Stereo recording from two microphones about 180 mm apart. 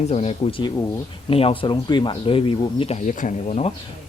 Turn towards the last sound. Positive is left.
turn(degrees=45)  # may be behind; listen again after turning